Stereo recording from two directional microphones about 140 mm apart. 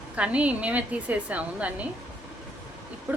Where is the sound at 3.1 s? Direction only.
15° right (ahead or behind).